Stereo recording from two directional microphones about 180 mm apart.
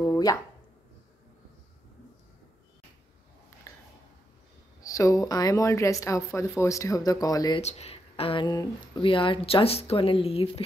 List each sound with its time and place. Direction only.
0.0 s a sound: 20° left (ahead or behind)
4.8 s speech: 15° left (ahead or behind)
7.6 s speech: 35° left (ahead or behind)